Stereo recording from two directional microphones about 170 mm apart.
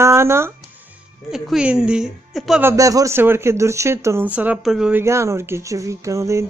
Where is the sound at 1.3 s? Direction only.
5° right (ahead or behind).